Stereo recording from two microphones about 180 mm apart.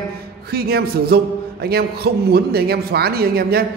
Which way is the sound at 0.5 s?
60° right (ahead or behind).